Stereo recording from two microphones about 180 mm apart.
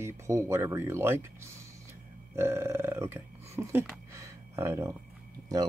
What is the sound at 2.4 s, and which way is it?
Speech, 15° right (ahead or behind).